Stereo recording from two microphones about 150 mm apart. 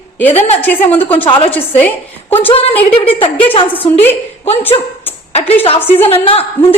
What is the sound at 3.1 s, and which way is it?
Speech, 35° left (ahead or behind).